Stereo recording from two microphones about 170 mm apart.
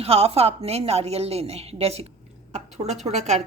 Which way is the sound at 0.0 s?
35° right (ahead or behind).